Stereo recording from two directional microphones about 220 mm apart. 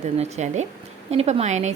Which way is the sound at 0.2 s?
30° right (ahead or behind).